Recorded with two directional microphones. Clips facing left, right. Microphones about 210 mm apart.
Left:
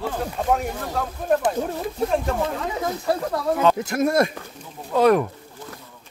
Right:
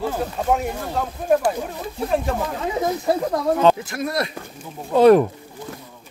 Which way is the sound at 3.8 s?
45° left (ahead or behind).